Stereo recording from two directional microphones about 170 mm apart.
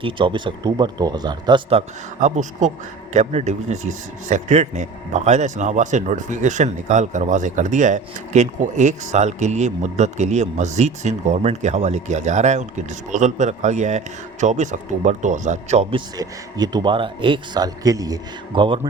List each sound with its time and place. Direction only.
0.0 s a man's voice: 30° right (ahead or behind)
2.2 s speech: 45° right (ahead or behind)
16.1 s a man's voice: 25° right (ahead or behind)